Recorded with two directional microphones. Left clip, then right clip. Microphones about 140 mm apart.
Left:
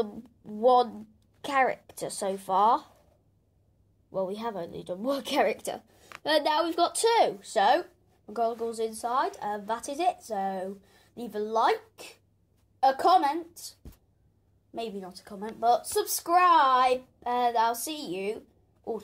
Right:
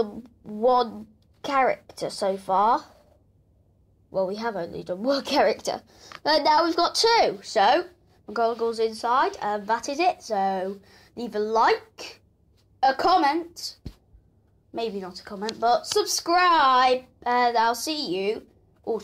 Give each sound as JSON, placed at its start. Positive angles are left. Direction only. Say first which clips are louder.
{"t": 0.0, "sound": "a woman's voice", "louder": "right 4 dB", "side_deg": 35}
{"t": 4.1, "sound": "a man's voice", "louder": "right 5 dB", "side_deg": 30}
{"t": 5.5, "sound": "a woman's voice", "louder": "right 6 dB", "side_deg": 15}
{"t": 14.7, "sound": "a woman's voice", "louder": "right 6 dB", "side_deg": 10}